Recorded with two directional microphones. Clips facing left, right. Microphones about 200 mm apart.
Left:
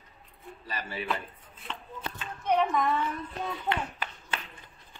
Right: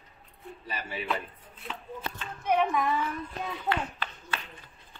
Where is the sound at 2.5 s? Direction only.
5° right (ahead or behind).